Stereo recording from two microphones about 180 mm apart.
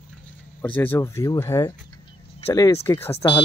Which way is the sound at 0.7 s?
10° left (ahead or behind).